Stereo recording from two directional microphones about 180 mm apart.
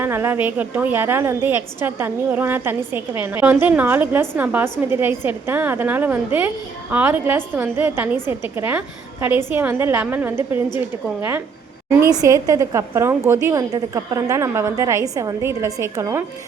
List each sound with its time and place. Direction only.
0.0 s a woman's voice: 10° right (ahead or behind)